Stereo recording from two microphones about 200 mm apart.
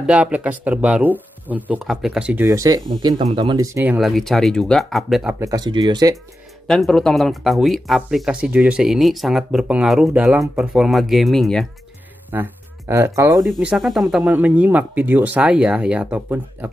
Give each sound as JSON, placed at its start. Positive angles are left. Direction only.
{"t": 0.0, "sound": "speech", "side_deg": -5}
{"t": 2.4, "sound": "speech", "side_deg": -15}
{"t": 5.4, "sound": "speech", "side_deg": -20}
{"t": 6.7, "sound": "speech", "side_deg": 5}
{"t": 12.3, "sound": "speech", "side_deg": -10}
{"t": 13.4, "sound": "speech", "side_deg": 0}